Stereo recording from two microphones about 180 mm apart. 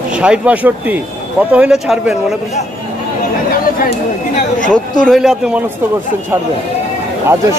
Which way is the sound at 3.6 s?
50° left (ahead or behind).